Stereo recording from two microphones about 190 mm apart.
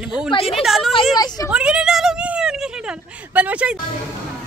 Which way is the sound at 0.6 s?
Centre (ahead or behind).